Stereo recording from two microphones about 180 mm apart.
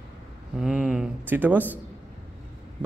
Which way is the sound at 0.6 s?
5° right (ahead or behind).